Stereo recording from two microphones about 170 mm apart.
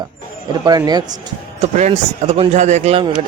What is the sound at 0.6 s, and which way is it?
Speech, 25° right (ahead or behind).